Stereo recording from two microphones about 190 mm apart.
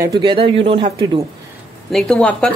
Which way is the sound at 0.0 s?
25° right (ahead or behind).